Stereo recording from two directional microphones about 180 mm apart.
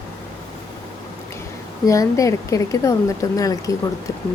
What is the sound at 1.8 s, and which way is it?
Speech, 20° left (ahead or behind).